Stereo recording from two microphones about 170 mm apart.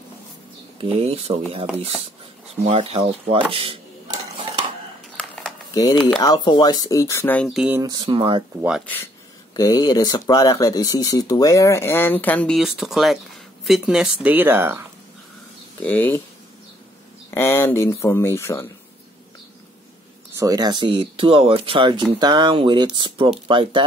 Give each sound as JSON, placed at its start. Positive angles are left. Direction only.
{"t": 0.7, "sound": "speech", "side_deg": -35}
{"t": 5.1, "sound": "a sound", "side_deg": 5}
{"t": 6.1, "sound": "speech", "side_deg": 25}
{"t": 7.4, "sound": "speech", "side_deg": -5}
{"t": 7.8, "sound": "speech", "side_deg": -25}
{"t": 8.5, "sound": "speech", "side_deg": -5}
{"t": 8.8, "sound": "speech", "side_deg": 10}
{"t": 15.8, "sound": "speech", "side_deg": 10}
{"t": 17.3, "sound": "speech", "side_deg": 15}
{"t": 20.3, "sound": "speech", "side_deg": -20}